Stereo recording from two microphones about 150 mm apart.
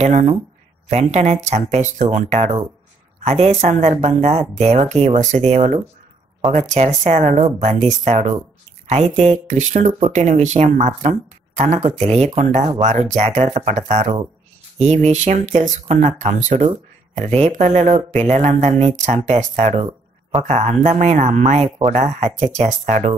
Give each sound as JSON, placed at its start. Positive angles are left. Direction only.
{"t": 0.0, "sound": "speech", "side_deg": -50}
{"t": 19.9, "sound": "a sound", "side_deg": -35}
{"t": 20.4, "sound": "speech", "side_deg": -45}